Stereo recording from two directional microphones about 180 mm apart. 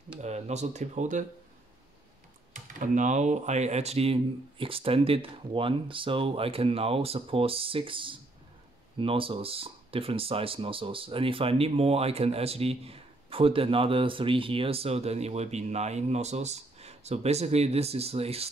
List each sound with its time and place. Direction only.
0.2 s speech: 40° right (ahead or behind)
2.7 s speech: 45° right (ahead or behind)